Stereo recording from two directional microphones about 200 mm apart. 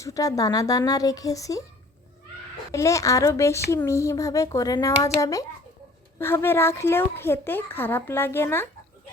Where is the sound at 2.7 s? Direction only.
15° left (ahead or behind).